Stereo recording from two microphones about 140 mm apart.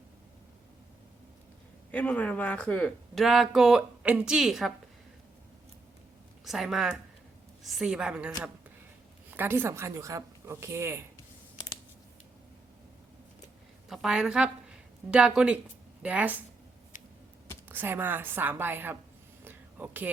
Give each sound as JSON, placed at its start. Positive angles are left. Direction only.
{"t": 1.9, "sound": "speech", "side_deg": 10}
{"t": 6.4, "sound": "a woman's voice", "side_deg": 0}
{"t": 9.3, "sound": "a woman's voice", "side_deg": -15}
{"t": 13.9, "sound": "a woman's voice", "side_deg": -5}
{"t": 17.7, "sound": "a woman's voice", "side_deg": -15}
{"t": 19.5, "sound": "a sound", "side_deg": -10}